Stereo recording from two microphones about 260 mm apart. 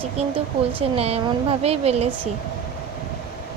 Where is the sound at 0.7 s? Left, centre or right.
Right.